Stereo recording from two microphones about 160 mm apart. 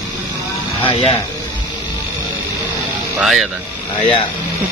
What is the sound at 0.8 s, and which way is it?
Speech, 35° left (ahead or behind).